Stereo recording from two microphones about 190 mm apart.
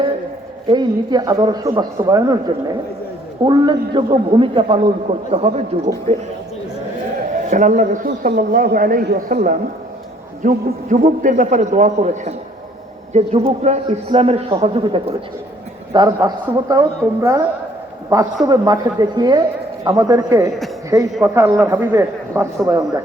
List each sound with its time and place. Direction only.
0.7 s a man's voice: 20° right (ahead or behind)
3.4 s a man's voice: 25° right (ahead or behind)
7.5 s a woman's voice: 40° right (ahead or behind); by 23.0 s 20° right (ahead or behind)